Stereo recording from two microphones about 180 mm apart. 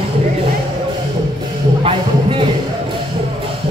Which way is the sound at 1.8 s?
30° right (ahead or behind).